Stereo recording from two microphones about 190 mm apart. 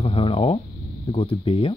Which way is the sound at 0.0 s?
30° left (ahead or behind).